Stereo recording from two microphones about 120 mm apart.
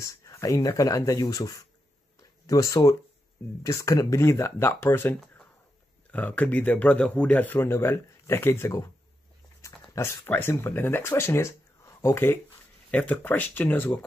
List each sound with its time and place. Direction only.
0.0 s speech: 25° left (ahead or behind)